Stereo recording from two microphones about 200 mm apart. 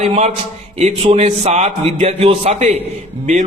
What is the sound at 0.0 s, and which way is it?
A man's voice, 35° right (ahead or behind).